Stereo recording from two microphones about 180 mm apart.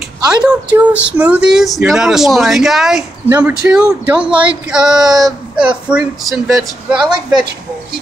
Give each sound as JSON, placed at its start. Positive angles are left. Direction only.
{"t": 0.4, "sound": "speech", "side_deg": -5}